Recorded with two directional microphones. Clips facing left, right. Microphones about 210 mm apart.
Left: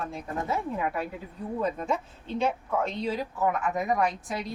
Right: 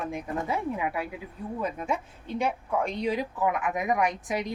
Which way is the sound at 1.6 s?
10° right (ahead or behind).